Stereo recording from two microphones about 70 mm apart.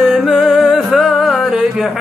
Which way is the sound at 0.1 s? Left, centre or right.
Centre.